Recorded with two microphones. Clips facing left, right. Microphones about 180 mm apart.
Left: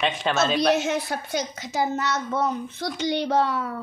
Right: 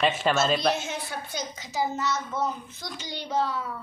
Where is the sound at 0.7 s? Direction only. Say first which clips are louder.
Left 8 dB; 70° left (ahead or behind).